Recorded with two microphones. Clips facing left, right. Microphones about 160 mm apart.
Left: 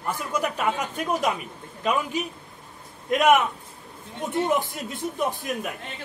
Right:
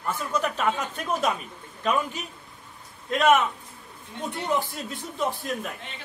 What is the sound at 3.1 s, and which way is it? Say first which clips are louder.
A man's voice: left 1 dB; 15° left (ahead or behind).